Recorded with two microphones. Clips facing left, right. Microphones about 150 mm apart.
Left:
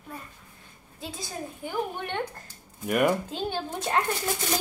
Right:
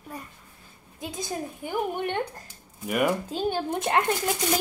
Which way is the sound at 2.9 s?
Centre (ahead or behind).